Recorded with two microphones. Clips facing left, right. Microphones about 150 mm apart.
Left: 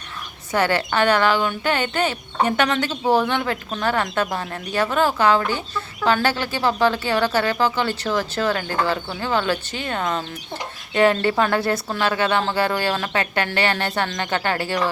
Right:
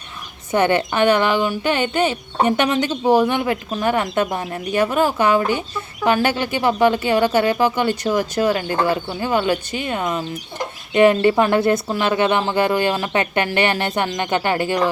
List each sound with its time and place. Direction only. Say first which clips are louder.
0.5 s speech: right 3 dB; 20° right (ahead or behind)